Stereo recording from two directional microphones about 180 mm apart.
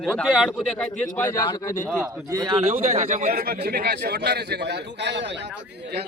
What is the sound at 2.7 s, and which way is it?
A man's voice, 40° right (ahead or behind).